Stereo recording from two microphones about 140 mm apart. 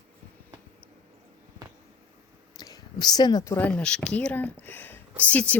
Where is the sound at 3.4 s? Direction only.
15° left (ahead or behind).